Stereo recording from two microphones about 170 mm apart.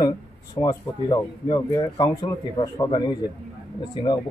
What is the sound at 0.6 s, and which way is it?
Speech, 25° left (ahead or behind).